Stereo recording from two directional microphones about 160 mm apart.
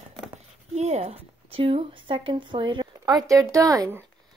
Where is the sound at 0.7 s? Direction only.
45° right (ahead or behind); by 4.0 s 20° right (ahead or behind).